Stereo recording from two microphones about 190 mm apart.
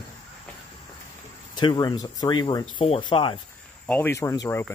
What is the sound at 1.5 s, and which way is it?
Speech, 20° left (ahead or behind).